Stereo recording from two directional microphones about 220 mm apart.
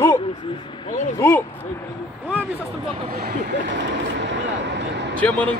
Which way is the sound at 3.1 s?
45° right (ahead or behind).